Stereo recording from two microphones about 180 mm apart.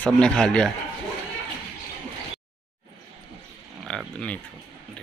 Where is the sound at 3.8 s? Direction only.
5° left (ahead or behind).